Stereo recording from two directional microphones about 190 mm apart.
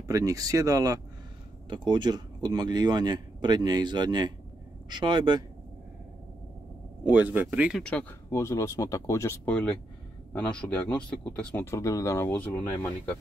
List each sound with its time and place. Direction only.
0.0 s speech: 20° right (ahead or behind)
7.1 s speech: 10° right (ahead or behind)
7.8 s speech: 5° left (ahead or behind)